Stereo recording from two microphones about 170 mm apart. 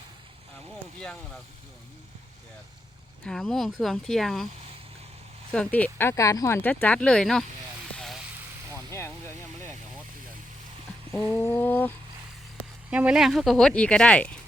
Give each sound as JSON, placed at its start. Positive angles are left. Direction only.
{"t": 3.2, "sound": "speech", "side_deg": 5}
{"t": 5.5, "sound": "speech", "side_deg": 10}
{"t": 7.9, "sound": "vehicle", "side_deg": 0}
{"t": 8.9, "sound": "speech", "side_deg": 15}
{"t": 11.3, "sound": "speech", "side_deg": 10}
{"t": 12.9, "sound": "speech", "side_deg": -5}